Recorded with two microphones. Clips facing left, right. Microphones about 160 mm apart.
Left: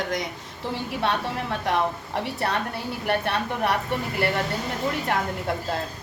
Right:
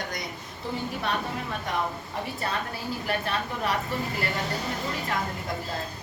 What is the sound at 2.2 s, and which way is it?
A woman's voice, 70° left (ahead or behind).